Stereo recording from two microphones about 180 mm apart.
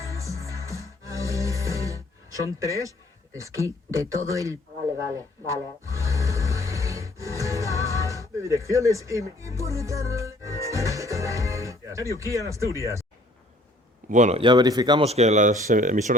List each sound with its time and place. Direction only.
0.0 s music: 15° right (ahead or behind)
3.3 s speech: 15° right (ahead or behind)
5.1 s music: 15° right (ahead or behind)
12.7 s speech: 15° right (ahead or behind)
14.1 s speech: 40° right (ahead or behind)
14.4 s speech: 20° right (ahead or behind)
15.0 s speech: 35° right (ahead or behind)